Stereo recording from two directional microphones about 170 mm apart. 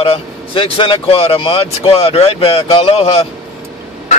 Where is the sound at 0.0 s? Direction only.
30° left (ahead or behind).